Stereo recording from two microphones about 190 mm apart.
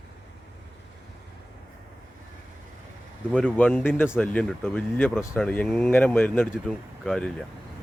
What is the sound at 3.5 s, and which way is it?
Speech, 10° left (ahead or behind).